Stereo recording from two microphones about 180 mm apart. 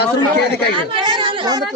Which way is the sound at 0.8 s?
25° right (ahead or behind).